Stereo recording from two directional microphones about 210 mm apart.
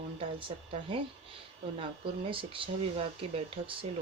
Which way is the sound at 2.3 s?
25° right (ahead or behind).